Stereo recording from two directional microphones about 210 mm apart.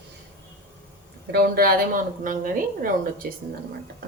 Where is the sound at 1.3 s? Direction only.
45° right (ahead or behind).